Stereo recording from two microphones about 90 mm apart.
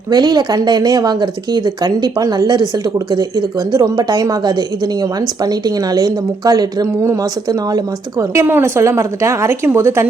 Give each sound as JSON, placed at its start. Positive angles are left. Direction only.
{"t": 0.1, "sound": "speech", "side_deg": -45}
{"t": 7.0, "sound": "a woman's voice", "side_deg": -35}